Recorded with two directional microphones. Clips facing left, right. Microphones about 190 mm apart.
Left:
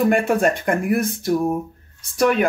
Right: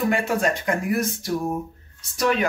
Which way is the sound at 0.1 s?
55° left (ahead or behind).